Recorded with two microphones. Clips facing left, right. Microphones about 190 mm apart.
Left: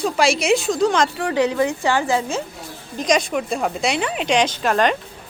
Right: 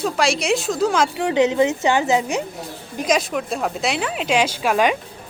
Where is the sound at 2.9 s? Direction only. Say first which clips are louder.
Left 1 dB; 5° right (ahead or behind).